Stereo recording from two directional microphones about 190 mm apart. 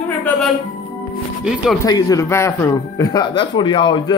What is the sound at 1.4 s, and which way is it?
Speech, 5° right (ahead or behind).